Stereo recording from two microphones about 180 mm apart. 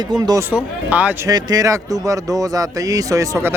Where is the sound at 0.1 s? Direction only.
20° right (ahead or behind).